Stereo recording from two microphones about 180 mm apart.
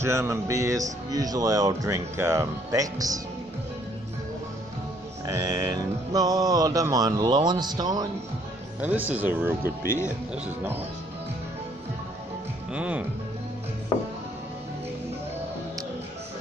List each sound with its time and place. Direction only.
0.0 s speech: 15° right (ahead or behind)
5.2 s speech: 20° right (ahead or behind)
8.8 s speech: 10° right (ahead or behind)
12.7 s speech: 5° right (ahead or behind)